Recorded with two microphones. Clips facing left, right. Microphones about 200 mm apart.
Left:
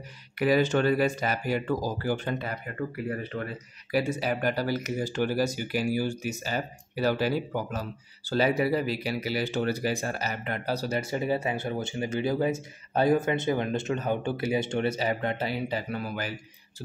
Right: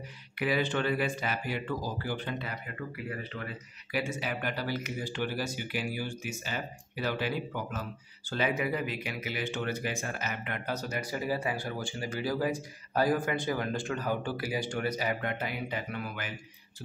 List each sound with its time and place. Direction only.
0.4 s speech: 40° left (ahead or behind)